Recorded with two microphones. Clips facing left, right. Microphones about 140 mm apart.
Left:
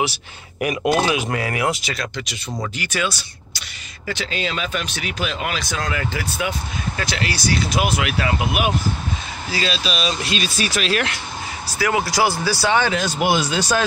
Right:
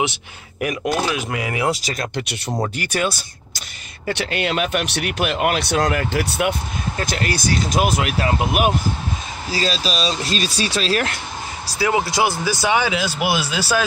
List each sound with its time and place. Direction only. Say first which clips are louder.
0.6 s speech: left 2 dB; 5° left (ahead or behind)
1.4 s speech: even; 20° right (ahead or behind)
1.7 s speech: right 2 dB; 40° right (ahead or behind)
2.8 s speech: right 2 dB; 50° right (ahead or behind)
4.1 s speech: right 4 dB; 65° right (ahead or behind)
7.1 s speech: right 1 dB; 45° right (ahead or behind)
11.8 s speech: even; 25° right (ahead or behind); by 13.8 s 5° right (ahead or behind)